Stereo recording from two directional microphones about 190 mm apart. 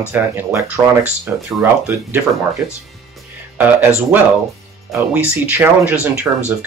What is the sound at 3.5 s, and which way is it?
Speech, 10° right (ahead or behind).